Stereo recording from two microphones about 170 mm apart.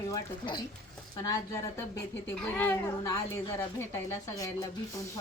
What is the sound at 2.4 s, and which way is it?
A woman's voice, 10° left (ahead or behind).